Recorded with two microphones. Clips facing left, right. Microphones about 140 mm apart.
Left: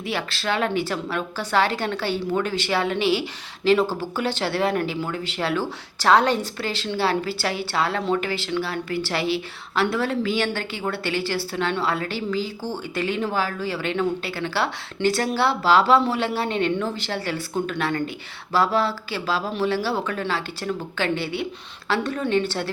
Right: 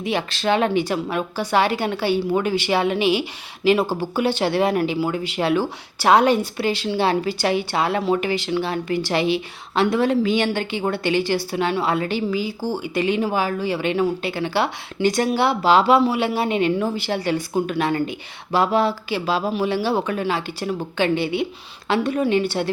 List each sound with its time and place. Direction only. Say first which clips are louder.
0.0 s a woman's voice: right 5 dB; 20° right (ahead or behind)